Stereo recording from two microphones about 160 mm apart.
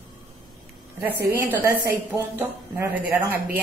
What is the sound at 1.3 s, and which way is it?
A woman's voice, 15° right (ahead or behind).